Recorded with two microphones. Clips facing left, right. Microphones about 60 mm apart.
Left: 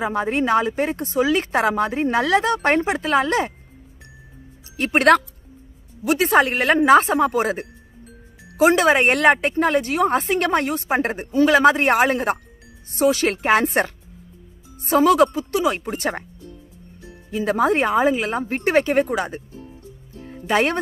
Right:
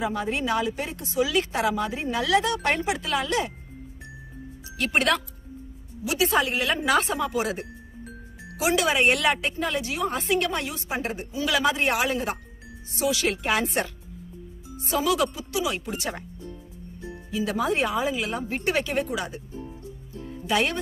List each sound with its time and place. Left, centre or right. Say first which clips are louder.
0.0 s speech: left 6 dB; left
4.7 s speech: left 4 dB; left
6.0 s a woman's voice: left 7 dB; left
6.9 s a woman's voice: left 9 dB; left
17.3 s speech: left 7 dB; left
20.4 s speech: left 5 dB; left